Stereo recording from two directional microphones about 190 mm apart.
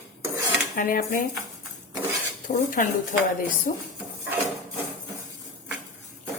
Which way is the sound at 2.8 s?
45° left (ahead or behind).